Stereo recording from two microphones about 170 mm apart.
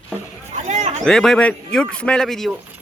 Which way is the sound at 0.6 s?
40° right (ahead or behind).